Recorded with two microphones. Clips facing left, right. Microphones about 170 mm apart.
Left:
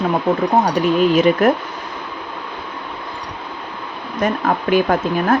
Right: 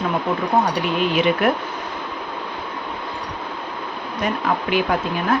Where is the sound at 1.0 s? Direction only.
40° left (ahead or behind).